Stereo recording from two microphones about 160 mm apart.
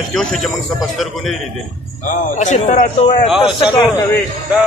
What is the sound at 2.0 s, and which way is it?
A man's voice, 50° left (ahead or behind).